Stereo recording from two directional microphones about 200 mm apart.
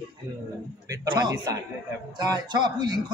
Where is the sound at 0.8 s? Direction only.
20° right (ahead or behind).